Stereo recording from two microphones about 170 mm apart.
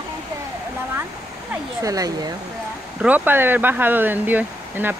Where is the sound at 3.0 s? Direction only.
10° right (ahead or behind).